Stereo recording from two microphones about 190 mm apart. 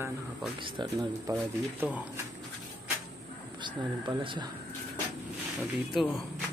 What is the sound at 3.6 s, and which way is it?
Speech, 25° right (ahead or behind).